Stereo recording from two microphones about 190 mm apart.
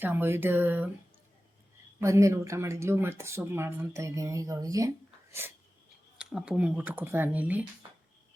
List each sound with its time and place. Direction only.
0.0 s speech: 10° right (ahead or behind)
2.0 s speech: 15° right (ahead or behind)
6.1 s speech: 5° right (ahead or behind)